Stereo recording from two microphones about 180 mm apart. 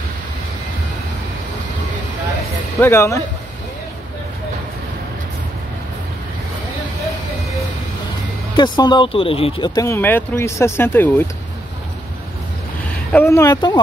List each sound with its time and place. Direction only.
2.8 s speech: 15° left (ahead or behind)
8.5 s speech: 25° left (ahead or behind)
9.8 s speech: 15° left (ahead or behind)
13.1 s speech: 15° left (ahead or behind)